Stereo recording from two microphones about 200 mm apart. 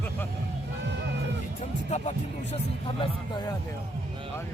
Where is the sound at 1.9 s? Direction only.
35° left (ahead or behind).